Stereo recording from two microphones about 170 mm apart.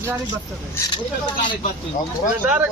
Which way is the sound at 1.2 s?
25° left (ahead or behind).